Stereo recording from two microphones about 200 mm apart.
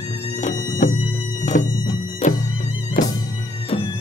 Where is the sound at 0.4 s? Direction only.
40° left (ahead or behind).